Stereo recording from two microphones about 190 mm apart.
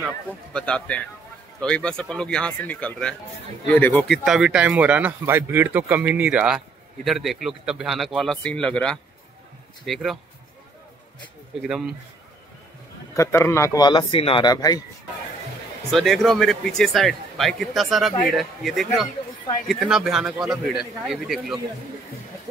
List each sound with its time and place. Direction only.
0.0 s a man's voice: 5° left (ahead or behind)
11.6 s a man's voice: 5° right (ahead or behind)
13.1 s speech: 15° left (ahead or behind)
15.9 s a man's voice: centre (ahead or behind)